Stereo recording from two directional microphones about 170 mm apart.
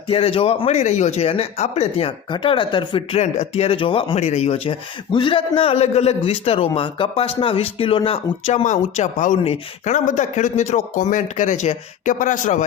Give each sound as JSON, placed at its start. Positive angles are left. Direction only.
{"t": 0.1, "sound": "speech", "side_deg": 35}